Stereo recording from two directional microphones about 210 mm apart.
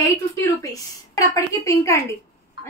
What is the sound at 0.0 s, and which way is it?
A woman's voice, 15° left (ahead or behind).